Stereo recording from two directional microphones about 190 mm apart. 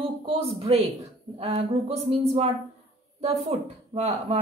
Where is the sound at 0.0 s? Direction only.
30° right (ahead or behind).